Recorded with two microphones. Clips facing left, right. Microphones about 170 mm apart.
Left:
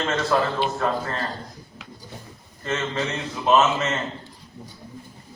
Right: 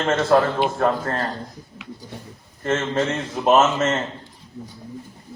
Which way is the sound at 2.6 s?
50° right (ahead or behind).